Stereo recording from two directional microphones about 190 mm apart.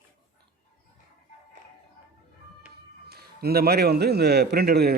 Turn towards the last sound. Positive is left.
turn(degrees=-55)  # may be behind; listen again after turning